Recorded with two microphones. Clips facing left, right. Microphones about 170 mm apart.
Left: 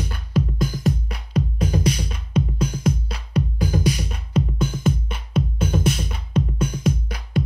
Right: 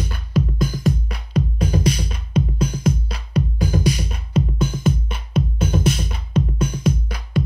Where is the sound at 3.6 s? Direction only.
45° right (ahead or behind).